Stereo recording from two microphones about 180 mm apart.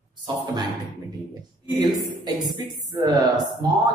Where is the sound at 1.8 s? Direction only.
25° right (ahead or behind).